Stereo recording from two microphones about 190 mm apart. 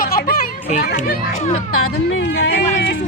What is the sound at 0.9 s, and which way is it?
Speech, 50° left (ahead or behind).